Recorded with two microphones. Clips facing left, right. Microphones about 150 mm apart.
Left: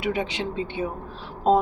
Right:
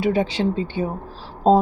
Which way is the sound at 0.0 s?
30° right (ahead or behind).